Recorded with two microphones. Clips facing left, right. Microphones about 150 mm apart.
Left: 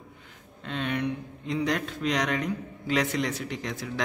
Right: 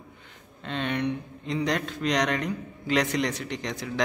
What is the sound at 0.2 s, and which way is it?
A man's voice, 5° left (ahead or behind).